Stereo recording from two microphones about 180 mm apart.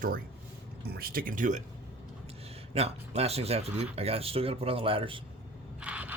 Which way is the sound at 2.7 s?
35° right (ahead or behind).